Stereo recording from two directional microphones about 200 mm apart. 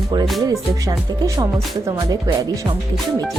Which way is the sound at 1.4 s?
15° right (ahead or behind).